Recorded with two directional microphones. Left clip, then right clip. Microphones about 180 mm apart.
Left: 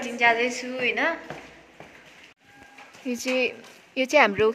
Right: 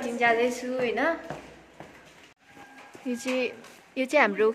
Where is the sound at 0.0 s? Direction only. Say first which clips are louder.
Left 2 dB; 15° right (ahead or behind).